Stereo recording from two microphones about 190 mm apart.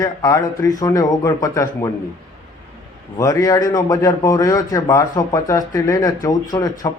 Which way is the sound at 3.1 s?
15° left (ahead or behind).